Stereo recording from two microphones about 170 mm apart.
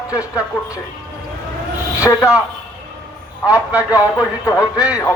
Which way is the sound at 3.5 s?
10° right (ahead or behind).